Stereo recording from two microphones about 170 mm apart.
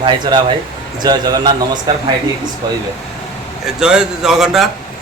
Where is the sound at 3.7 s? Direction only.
5° right (ahead or behind).